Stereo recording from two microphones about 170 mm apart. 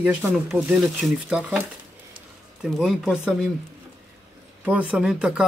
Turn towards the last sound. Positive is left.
turn(degrees=-5)  # may be behind; listen again after turning